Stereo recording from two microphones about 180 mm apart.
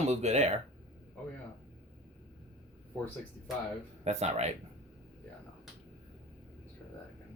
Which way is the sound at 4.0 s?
40° right (ahead or behind).